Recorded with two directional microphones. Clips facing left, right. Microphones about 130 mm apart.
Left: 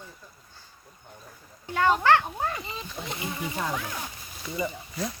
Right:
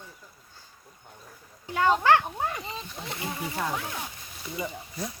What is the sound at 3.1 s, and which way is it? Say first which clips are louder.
Speech: even; 20° left (ahead or behind).